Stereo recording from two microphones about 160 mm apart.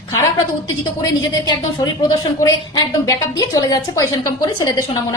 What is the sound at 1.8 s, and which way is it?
A woman's voice, 25° left (ahead or behind).